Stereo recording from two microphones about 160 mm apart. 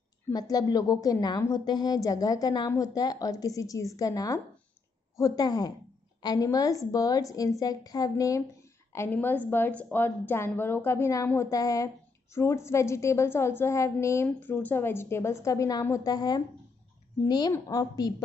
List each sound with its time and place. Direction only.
0.3 s a woman's voice: 25° left (ahead or behind)